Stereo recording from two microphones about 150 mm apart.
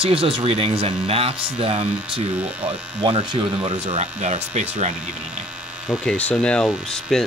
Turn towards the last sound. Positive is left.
turn(degrees=5)  # may be behind; listen again after turning